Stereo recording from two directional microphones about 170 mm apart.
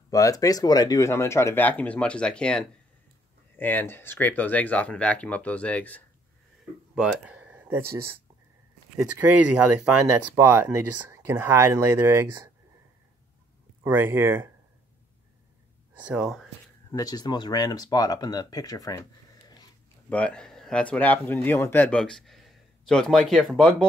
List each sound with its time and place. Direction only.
0.1 s speech: 20° left (ahead or behind)
7.0 s a sound: 5° right (ahead or behind)
8.9 s speech: 10° right (ahead or behind)
13.8 s speech: 15° right (ahead or behind)
15.9 s speech: 5° right (ahead or behind)
16.9 s speech: 25° left (ahead or behind)
20.1 s speech: 5° left (ahead or behind)